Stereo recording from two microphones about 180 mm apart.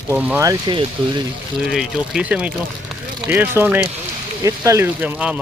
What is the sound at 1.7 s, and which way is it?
Speech, 5° right (ahead or behind).